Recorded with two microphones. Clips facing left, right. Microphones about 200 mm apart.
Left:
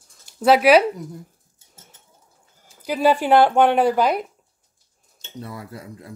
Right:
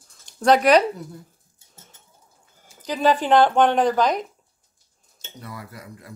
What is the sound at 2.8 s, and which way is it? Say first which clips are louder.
Speech: left 2 dB; 10° left (ahead or behind).